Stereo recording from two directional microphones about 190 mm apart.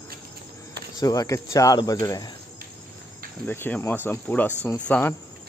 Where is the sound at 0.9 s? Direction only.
20° left (ahead or behind).